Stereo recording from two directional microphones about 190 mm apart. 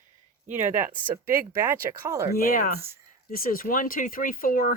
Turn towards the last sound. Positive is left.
turn(degrees=50)  # may be behind; listen again after turning